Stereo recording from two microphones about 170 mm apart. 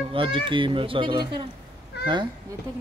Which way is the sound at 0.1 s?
30° right (ahead or behind).